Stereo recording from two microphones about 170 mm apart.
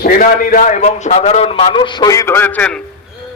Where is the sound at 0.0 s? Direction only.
55° left (ahead or behind); by 2.8 s 5° left (ahead or behind).